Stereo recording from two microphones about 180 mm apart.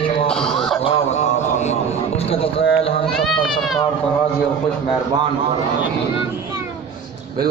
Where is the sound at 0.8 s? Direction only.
40° left (ahead or behind).